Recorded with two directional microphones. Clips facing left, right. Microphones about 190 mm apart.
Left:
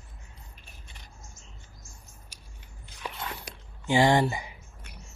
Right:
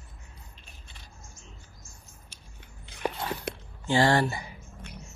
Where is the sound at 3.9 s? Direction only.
15° left (ahead or behind).